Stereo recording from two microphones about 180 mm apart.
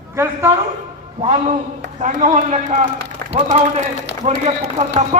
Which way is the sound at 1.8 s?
45° right (ahead or behind).